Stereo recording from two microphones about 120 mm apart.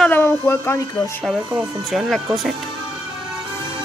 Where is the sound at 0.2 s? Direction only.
20° left (ahead or behind).